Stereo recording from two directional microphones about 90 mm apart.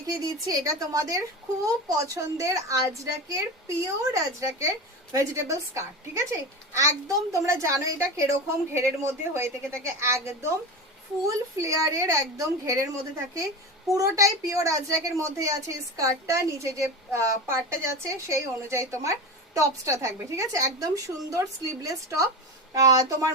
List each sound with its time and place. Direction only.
0.4 s a woman's voice: 40° right (ahead or behind)